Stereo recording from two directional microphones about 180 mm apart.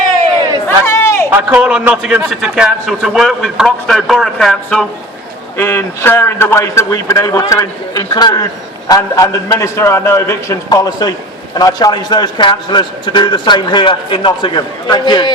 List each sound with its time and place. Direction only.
0.9 s a sound: 15° left (ahead or behind)
1.3 s a man's voice: 10° right (ahead or behind)
5.5 s a man's voice: 15° left (ahead or behind)